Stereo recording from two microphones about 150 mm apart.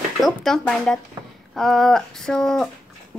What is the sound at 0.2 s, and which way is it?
A woman's voice, centre (ahead or behind).